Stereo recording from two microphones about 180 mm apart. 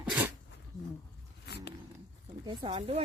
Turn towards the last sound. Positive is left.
turn(degrees=-30)  # may be behind; listen again after turning